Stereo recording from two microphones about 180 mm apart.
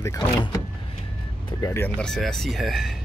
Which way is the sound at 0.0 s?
15° left (ahead or behind).